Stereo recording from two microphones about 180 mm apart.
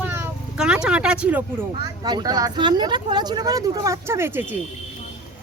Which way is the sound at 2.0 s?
20° right (ahead or behind).